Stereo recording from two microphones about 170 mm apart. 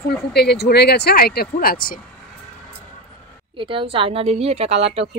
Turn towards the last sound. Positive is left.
turn(degrees=-35)  # may be behind; listen again after turning